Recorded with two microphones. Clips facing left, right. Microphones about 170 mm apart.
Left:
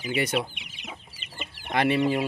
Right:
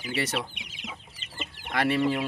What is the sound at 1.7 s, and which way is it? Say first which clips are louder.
Speech: left 2 dB; 20° left (ahead or behind).